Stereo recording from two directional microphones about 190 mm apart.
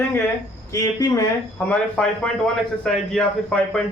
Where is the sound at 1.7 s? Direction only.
5° left (ahead or behind).